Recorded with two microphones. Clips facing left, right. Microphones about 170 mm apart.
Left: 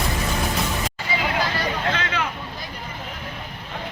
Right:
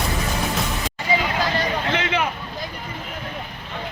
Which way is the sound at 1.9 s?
20° right (ahead or behind).